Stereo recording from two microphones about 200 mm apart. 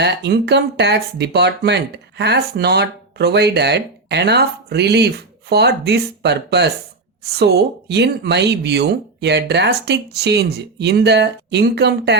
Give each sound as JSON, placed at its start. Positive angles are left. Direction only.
{"t": 0.0, "sound": "speech", "side_deg": -55}